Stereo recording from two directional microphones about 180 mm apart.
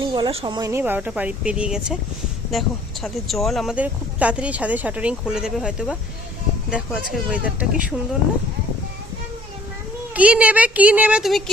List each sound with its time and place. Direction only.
0.0 s a sound: 25° right (ahead or behind)
0.4 s speech: 20° right (ahead or behind)
10.2 s speech: 5° right (ahead or behind)